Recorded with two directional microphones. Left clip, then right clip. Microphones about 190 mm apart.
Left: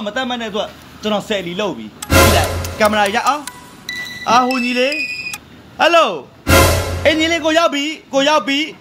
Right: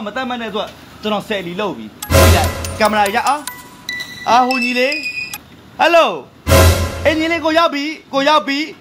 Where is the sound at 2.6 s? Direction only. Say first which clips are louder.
Even; 5° left (ahead or behind).